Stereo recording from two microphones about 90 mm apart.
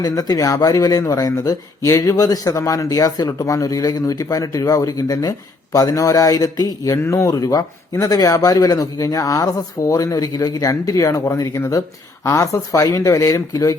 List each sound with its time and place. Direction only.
0.0 s speech: 45° left (ahead or behind)